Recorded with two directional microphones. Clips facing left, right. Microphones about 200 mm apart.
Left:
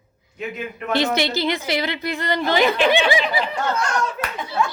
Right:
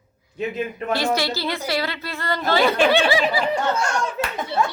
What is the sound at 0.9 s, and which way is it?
A woman's voice, 20° left (ahead or behind).